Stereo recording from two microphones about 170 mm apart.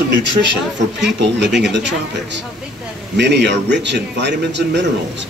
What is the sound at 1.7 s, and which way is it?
A man's voice, 90° right.